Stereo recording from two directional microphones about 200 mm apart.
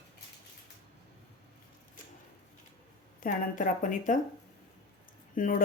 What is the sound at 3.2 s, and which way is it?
A woman's voice, 45° left (ahead or behind).